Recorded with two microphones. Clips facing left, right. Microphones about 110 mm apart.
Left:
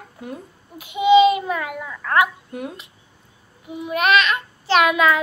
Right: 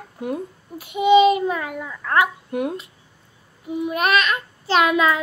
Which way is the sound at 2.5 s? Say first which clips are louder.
Right 7 dB; 60° right (ahead or behind).